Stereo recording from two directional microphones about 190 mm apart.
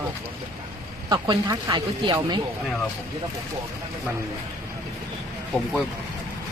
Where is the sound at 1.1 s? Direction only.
20° right (ahead or behind).